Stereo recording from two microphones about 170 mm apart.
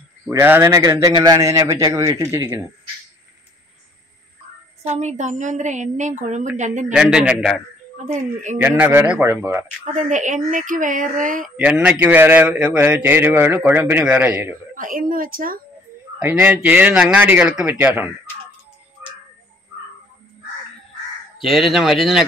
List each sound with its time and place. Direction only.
0.3 s a man's voice: 15° right (ahead or behind)
4.8 s speech: 45° right (ahead or behind)
6.9 s speech: 5° right (ahead or behind)
8.0 s speech: 45° right (ahead or behind)
8.5 s a man's voice: 10° right (ahead or behind)
9.9 s speech: 45° right (ahead or behind)
11.5 s a man's voice: 5° right (ahead or behind)
14.8 s speech: 55° right (ahead or behind)
16.2 s a man's voice: 10° right (ahead or behind)
21.4 s speech: centre (ahead or behind)